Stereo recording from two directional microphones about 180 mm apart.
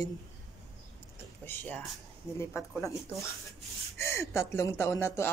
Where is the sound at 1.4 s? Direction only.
10° left (ahead or behind).